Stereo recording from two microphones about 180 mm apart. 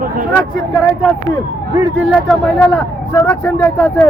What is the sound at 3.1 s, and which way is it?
Speech, 15° left (ahead or behind).